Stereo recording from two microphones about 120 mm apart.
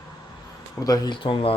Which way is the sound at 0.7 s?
30° left (ahead or behind).